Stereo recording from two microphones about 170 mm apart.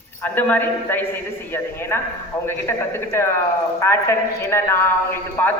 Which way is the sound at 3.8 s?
15° left (ahead or behind).